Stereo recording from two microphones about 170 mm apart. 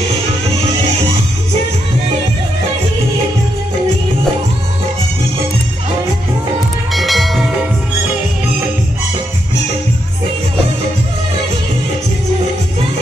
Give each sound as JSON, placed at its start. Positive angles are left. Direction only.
{"t": 6.9, "sound": "music", "side_deg": 0}